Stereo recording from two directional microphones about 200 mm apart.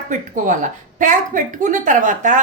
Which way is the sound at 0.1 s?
40° right (ahead or behind).